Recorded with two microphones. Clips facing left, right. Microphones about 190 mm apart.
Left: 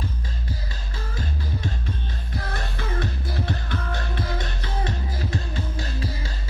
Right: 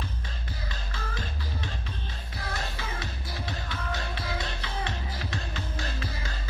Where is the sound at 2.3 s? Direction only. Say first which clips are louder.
Left 4 dB; 50° left (ahead or behind).